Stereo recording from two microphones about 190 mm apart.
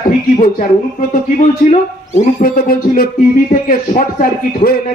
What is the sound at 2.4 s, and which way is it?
Speech, 50° left (ahead or behind).